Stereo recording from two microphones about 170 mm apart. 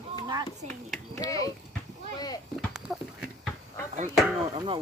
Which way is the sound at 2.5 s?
Centre (ahead or behind).